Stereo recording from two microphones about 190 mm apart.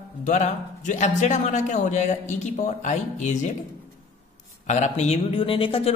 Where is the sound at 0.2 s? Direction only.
40° left (ahead or behind).